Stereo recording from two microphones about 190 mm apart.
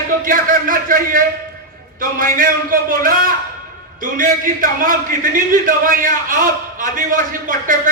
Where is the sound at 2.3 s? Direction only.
45° right (ahead or behind).